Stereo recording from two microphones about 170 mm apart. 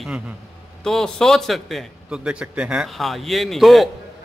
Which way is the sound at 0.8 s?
5° left (ahead or behind).